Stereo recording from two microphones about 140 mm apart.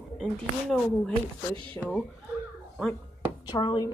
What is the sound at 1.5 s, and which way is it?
Speech, 35° right (ahead or behind).